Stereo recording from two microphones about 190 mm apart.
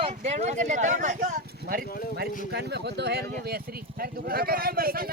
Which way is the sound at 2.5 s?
60° right (ahead or behind).